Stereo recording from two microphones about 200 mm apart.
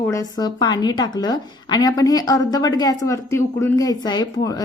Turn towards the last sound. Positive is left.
turn(degrees=20)  # may be behind; listen again after turning